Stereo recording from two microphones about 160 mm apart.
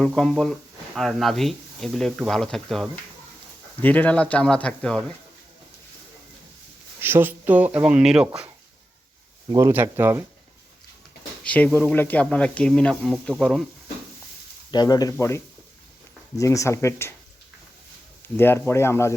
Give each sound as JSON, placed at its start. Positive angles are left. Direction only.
{"t": 0.1, "sound": "speech", "side_deg": 5}
{"t": 7.0, "sound": "speech", "side_deg": -15}
{"t": 9.5, "sound": "speech", "side_deg": -20}
{"t": 11.4, "sound": "speech", "side_deg": 10}
{"t": 14.7, "sound": "speech", "side_deg": 25}
{"t": 16.4, "sound": "speech", "side_deg": 20}
{"t": 18.2, "sound": "speech", "side_deg": 15}